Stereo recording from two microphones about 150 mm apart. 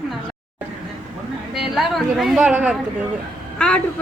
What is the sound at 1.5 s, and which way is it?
Speech, centre (ahead or behind).